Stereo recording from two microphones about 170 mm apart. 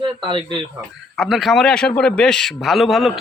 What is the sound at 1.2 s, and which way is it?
A man's voice, centre (ahead or behind).